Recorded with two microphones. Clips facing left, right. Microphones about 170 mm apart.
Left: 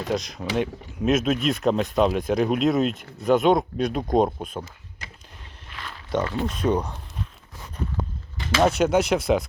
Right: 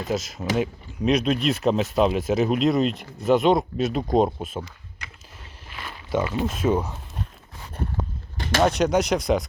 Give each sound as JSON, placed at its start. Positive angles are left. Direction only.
{"t": 0.1, "sound": "speech", "side_deg": -5}
{"t": 2.9, "sound": "speech", "side_deg": 45}
{"t": 3.2, "sound": "speech", "side_deg": 0}
{"t": 4.6, "sound": "a sound", "side_deg": 35}
{"t": 5.7, "sound": "speech", "side_deg": -5}
{"t": 8.6, "sound": "speech", "side_deg": 5}